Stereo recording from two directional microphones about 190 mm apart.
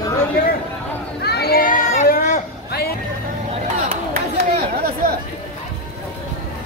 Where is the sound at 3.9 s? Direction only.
55° right (ahead or behind).